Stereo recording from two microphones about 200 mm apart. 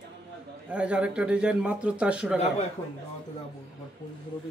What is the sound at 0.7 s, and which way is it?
Speech, 5° right (ahead or behind).